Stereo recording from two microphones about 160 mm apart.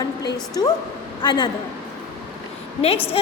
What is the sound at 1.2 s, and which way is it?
Speech, 25° left (ahead or behind).